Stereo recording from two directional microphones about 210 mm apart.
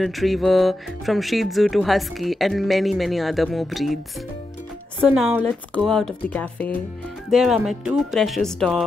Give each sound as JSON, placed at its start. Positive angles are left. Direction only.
{"t": 0.0, "sound": "speech", "side_deg": 0}
{"t": 5.1, "sound": "speech", "side_deg": 0}